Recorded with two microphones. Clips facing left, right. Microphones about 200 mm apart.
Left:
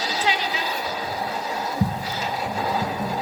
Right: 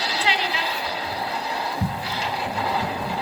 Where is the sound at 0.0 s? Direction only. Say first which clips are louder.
Left 1 dB; 45° left (ahead or behind).